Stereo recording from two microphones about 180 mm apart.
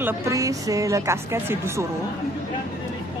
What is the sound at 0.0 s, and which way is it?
A woman's voice, 15° right (ahead or behind).